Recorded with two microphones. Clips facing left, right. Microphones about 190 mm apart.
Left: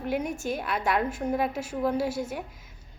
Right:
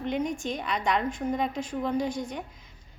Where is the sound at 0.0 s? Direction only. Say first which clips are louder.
Even; 5° left (ahead or behind).